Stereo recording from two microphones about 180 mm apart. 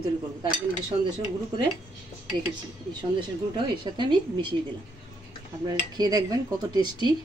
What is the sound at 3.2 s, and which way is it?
A woman's voice, 25° right (ahead or behind).